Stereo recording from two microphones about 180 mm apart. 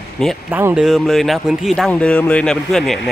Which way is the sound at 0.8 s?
Centre (ahead or behind).